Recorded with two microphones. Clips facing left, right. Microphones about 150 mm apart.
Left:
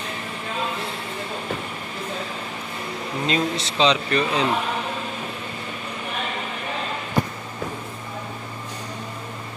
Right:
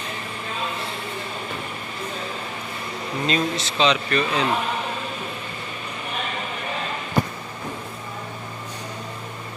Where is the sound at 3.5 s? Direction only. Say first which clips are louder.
Left 1 dB; 30° left (ahead or behind).